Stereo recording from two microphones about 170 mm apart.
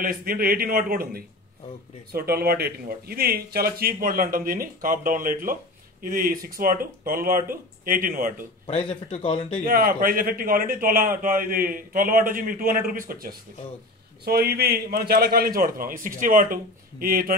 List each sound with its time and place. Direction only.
0.0 s a man's voice: 60° right (ahead or behind)
8.6 s a man's voice: 40° left (ahead or behind)
9.7 s a man's voice: 60° right (ahead or behind)